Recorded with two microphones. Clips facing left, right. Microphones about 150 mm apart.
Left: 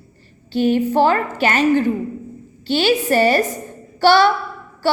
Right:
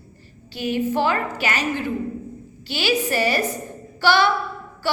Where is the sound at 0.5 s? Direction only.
45° left (ahead or behind).